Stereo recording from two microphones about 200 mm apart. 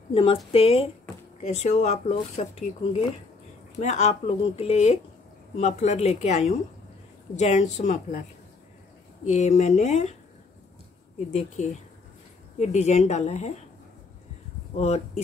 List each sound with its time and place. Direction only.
0.1 s speech: 30° left (ahead or behind)
9.2 s speech: 35° left (ahead or behind)
11.3 s speech: 35° left (ahead or behind)